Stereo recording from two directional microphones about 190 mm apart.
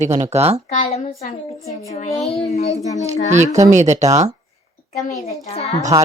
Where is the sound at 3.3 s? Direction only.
40° right (ahead or behind).